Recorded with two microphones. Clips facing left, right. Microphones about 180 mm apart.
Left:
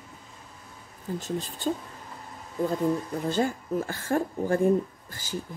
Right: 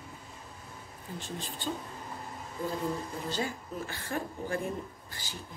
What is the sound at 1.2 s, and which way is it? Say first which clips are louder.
Speech: left 5 dB; 40° left (ahead or behind).